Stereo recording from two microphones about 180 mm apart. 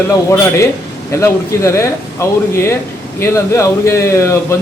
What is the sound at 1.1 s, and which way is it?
A man's voice, 15° left (ahead or behind).